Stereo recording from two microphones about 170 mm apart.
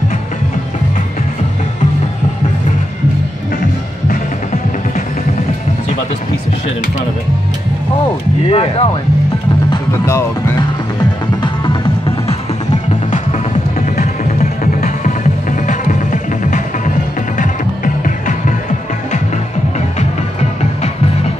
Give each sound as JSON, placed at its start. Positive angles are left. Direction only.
{"t": 8.5, "sound": "speech", "side_deg": 35}
{"t": 10.0, "sound": "speech", "side_deg": 15}
{"t": 11.0, "sound": "music", "side_deg": 30}
{"t": 13.7, "sound": "music", "side_deg": 55}